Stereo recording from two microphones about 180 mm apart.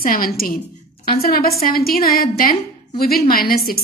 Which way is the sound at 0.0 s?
50° left (ahead or behind).